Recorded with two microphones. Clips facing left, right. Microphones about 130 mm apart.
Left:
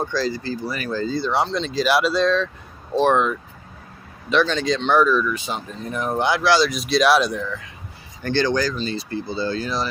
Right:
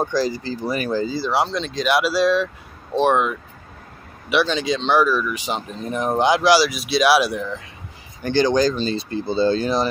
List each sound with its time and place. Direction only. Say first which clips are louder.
0.0 s speech: right 2 dB; 15° right (ahead or behind)
1.0 s speech: even; 5° right (ahead or behind)
8.7 s speech: right 3 dB; 30° right (ahead or behind)